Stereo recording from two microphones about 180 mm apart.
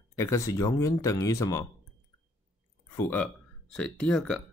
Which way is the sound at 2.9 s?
15° left (ahead or behind).